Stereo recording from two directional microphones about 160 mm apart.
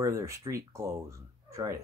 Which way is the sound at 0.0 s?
20° right (ahead or behind).